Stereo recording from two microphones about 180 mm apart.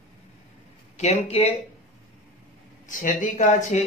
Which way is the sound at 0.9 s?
35° left (ahead or behind).